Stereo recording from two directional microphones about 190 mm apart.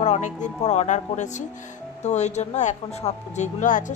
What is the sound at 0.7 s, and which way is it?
Speech, 35° left (ahead or behind).